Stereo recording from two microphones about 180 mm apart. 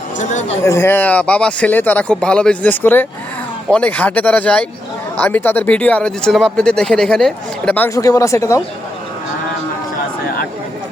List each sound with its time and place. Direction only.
0.2 s speech: 40° left (ahead or behind)
0.6 s speech: 15° left (ahead or behind)